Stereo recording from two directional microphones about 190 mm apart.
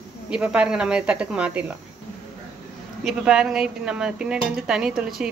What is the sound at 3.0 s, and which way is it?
Speech, 5° right (ahead or behind).